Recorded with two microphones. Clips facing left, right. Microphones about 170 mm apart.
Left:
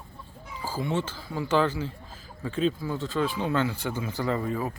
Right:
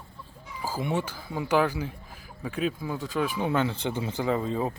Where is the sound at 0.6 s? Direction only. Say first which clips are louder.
Even; 15° right (ahead or behind).